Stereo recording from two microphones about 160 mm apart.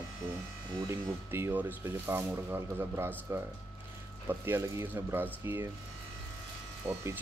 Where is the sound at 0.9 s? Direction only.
15° right (ahead or behind).